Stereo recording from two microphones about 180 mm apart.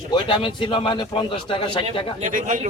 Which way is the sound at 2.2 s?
45° right (ahead or behind).